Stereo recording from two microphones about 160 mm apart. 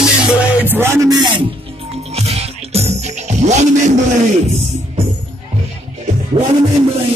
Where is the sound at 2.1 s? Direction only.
40° right (ahead or behind).